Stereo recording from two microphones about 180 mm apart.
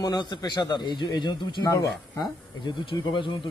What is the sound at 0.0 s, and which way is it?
A man's voice, 20° left (ahead or behind).